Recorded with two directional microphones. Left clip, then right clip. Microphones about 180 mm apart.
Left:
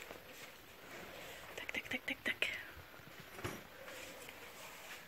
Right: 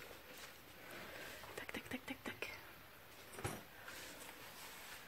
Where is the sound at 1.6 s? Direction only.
15° right (ahead or behind).